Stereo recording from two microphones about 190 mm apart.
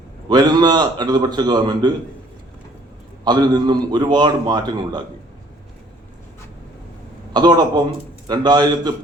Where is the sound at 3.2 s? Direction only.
20° right (ahead or behind).